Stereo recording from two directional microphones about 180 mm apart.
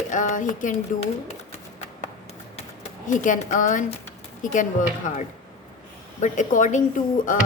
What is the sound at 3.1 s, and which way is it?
Speech, 45° left (ahead or behind).